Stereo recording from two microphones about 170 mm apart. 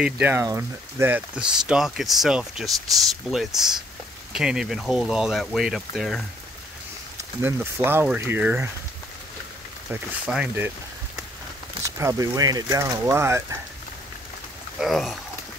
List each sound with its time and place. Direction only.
0.0 s speech: 10° right (ahead or behind)
7.2 s speech: 15° right (ahead or behind)
9.8 s speech: 10° right (ahead or behind)
11.8 s speech: 20° right (ahead or behind)
14.8 s speech: centre (ahead or behind)